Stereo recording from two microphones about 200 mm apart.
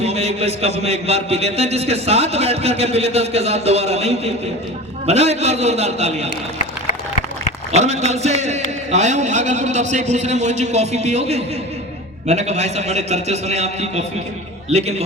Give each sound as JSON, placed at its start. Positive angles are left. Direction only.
{"t": 0.0, "sound": "a man's voice", "side_deg": -30}
{"t": 7.7, "sound": "a man's voice", "side_deg": -35}